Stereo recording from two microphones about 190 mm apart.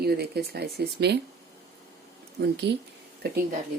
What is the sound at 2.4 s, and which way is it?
Speech, 55° right (ahead or behind).